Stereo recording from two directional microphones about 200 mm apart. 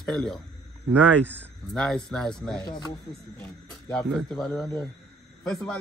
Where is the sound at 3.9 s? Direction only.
5° left (ahead or behind).